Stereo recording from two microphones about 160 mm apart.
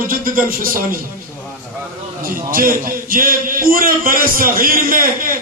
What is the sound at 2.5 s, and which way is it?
A man's voice, 60° right (ahead or behind).